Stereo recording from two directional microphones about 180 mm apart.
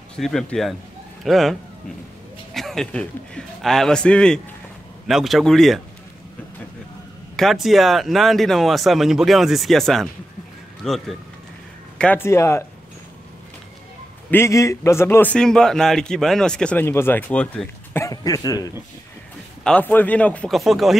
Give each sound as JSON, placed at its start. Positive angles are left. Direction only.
{"t": 0.1, "sound": "speech", "side_deg": 5}
{"t": 7.3, "sound": "a man's voice", "side_deg": 0}
{"t": 14.3, "sound": "a man's voice", "side_deg": 15}
{"t": 18.0, "sound": "speech", "side_deg": 20}
{"t": 19.6, "sound": "speech", "side_deg": 10}